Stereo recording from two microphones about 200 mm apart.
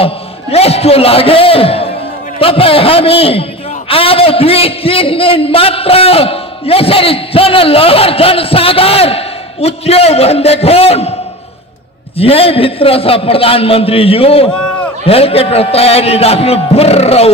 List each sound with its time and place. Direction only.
0.0 s a man's voice: 30° left (ahead or behind)
12.2 s a man's voice: 30° left (ahead or behind)